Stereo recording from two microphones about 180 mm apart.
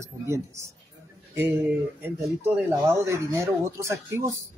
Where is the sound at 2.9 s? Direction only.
15° right (ahead or behind).